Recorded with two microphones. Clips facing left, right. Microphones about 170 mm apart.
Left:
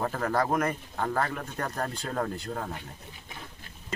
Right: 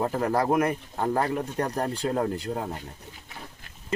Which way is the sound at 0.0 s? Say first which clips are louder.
Right 3 dB; 15° right (ahead or behind).